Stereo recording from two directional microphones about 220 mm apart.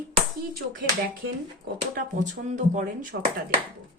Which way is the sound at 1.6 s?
35° right (ahead or behind).